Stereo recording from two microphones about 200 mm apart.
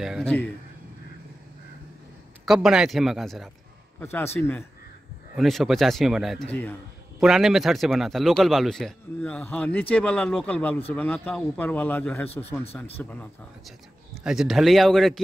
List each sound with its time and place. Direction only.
0.0 s a man's voice: centre (ahead or behind)
2.4 s a man's voice: centre (ahead or behind)
4.0 s a man's voice: 10° left (ahead or behind)